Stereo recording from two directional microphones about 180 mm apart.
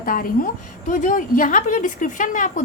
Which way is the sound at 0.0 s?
50° left (ahead or behind).